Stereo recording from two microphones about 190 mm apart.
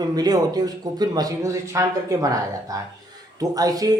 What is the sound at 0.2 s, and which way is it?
Speech, 20° right (ahead or behind).